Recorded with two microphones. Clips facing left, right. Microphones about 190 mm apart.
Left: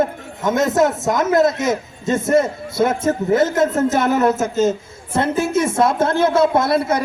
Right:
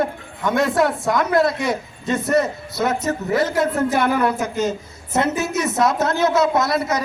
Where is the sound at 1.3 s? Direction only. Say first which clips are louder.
Left 3 dB; 20° left (ahead or behind).